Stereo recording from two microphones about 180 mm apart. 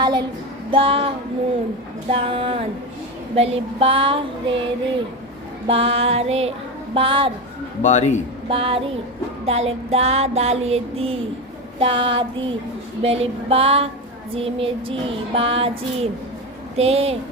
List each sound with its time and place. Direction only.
0.0 s music: 25° right (ahead or behind)
7.8 s a man's voice: 40° left (ahead or behind)
8.4 s music: 30° right (ahead or behind)
11.8 s a sound: 30° right (ahead or behind)
13.0 s music: 35° right (ahead or behind)
16.7 s music: 35° right (ahead or behind)